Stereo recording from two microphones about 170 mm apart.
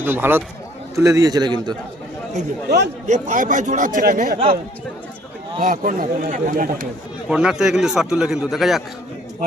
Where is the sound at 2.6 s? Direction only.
75° right (ahead or behind).